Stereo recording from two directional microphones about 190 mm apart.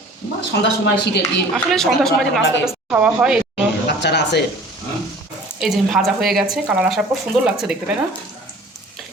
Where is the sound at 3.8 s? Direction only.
65° left (ahead or behind).